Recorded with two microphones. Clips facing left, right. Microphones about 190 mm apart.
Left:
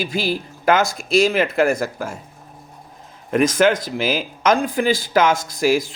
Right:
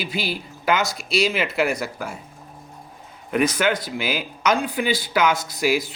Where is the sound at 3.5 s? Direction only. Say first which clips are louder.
Left 6 dB; 45° left (ahead or behind).